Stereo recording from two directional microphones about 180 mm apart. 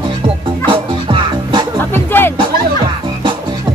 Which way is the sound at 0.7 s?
25° right (ahead or behind).